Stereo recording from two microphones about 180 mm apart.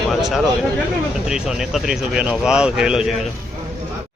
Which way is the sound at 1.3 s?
Centre (ahead or behind).